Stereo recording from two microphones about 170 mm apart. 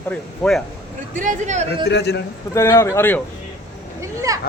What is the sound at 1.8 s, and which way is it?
Speech, 85° left.